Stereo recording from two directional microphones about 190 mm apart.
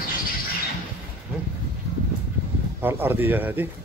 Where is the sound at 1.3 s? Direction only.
5° right (ahead or behind).